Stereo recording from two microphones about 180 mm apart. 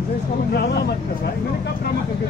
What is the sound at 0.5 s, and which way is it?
Vehicle, 65° left (ahead or behind).